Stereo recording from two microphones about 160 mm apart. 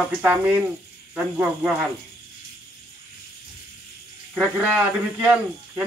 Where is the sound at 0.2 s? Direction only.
10° right (ahead or behind).